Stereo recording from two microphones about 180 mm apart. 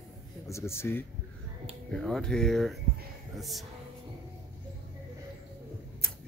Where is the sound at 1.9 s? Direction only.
5° left (ahead or behind).